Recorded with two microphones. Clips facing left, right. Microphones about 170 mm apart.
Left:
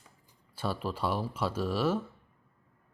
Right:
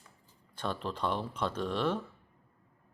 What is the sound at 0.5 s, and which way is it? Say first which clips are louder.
Speech: left 2 dB; 5° left (ahead or behind).